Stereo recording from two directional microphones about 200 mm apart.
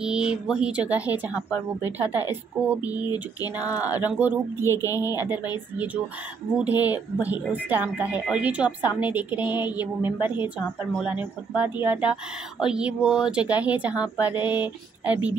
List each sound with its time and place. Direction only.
0.0 s speech: 5° right (ahead or behind)
3.1 s a sound: 20° left (ahead or behind)
3.5 s speech: 5° right (ahead or behind)
4.6 s speech: 15° left (ahead or behind)
6.5 s speech: 10° right (ahead or behind)